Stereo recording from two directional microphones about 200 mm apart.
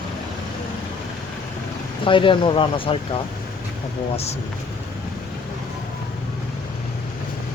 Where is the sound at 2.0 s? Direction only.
25° left (ahead or behind).